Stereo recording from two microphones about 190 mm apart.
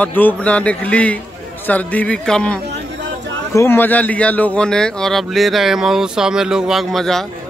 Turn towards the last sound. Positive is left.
turn(degrees=0)  # may be behind; listen again after turning